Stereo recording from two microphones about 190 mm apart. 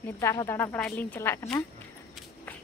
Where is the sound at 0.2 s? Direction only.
15° left (ahead or behind).